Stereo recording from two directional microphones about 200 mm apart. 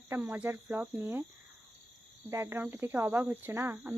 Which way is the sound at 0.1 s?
10° right (ahead or behind).